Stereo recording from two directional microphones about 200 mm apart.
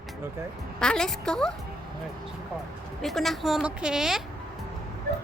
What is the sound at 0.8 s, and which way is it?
Speech, 5° left (ahead or behind).